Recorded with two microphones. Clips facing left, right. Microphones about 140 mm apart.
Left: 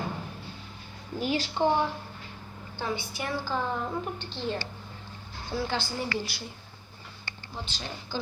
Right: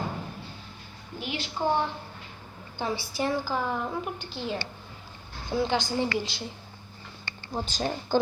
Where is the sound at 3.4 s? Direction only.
10° right (ahead or behind).